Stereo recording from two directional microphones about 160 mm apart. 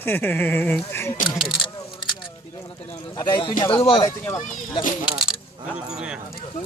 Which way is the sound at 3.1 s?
30° left (ahead or behind).